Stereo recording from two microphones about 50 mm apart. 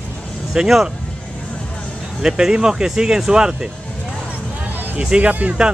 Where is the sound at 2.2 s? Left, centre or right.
Centre.